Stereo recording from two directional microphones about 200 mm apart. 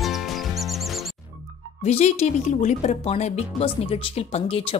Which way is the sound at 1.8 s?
35° left (ahead or behind).